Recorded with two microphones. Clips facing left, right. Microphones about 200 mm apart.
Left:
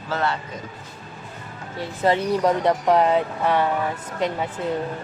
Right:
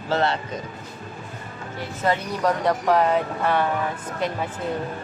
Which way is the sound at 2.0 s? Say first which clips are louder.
Left 3 dB; 25° left (ahead or behind).